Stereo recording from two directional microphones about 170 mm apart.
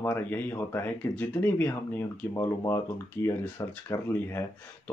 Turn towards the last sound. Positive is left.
turn(degrees=20)  # may be behind; listen again after turning